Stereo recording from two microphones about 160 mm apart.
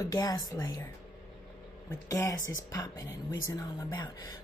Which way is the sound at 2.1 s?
20° left (ahead or behind).